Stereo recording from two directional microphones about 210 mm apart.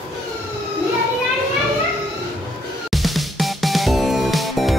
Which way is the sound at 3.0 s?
Centre (ahead or behind).